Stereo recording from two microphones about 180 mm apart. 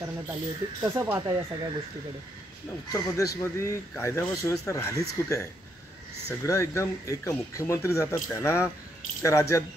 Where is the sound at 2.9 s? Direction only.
20° left (ahead or behind).